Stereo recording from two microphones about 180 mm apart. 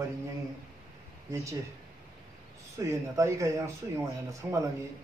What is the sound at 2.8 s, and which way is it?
A man's voice, 15° right (ahead or behind).